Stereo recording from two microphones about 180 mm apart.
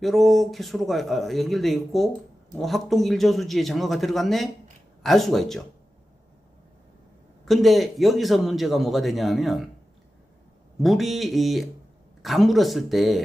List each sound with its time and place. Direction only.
0.0 s a man's voice: centre (ahead or behind)
7.4 s a man's voice: centre (ahead or behind)
10.8 s a man's voice: centre (ahead or behind)